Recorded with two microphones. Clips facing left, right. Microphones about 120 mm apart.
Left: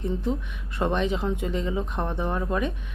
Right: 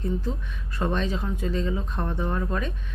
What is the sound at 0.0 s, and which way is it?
Speech, 20° left (ahead or behind).